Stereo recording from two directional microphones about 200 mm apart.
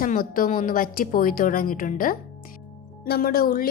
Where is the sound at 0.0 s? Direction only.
45° left (ahead or behind).